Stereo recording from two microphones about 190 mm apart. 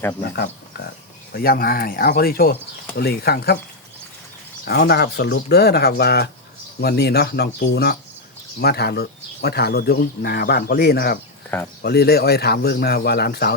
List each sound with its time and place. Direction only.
0.2 s speech: 60° left (ahead or behind)
4.6 s speech: 55° left (ahead or behind)